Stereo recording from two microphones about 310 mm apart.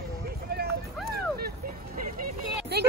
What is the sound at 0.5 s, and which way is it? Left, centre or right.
Speech, right.